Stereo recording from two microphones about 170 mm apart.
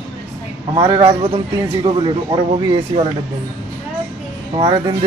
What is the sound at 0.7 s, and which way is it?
Speech, 30° right (ahead or behind).